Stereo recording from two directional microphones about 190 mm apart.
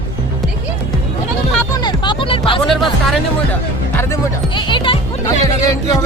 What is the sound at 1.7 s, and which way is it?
Music, 25° left (ahead or behind).